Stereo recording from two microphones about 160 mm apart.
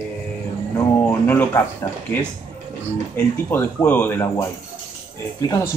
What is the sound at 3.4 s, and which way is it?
Speech, 10° left (ahead or behind).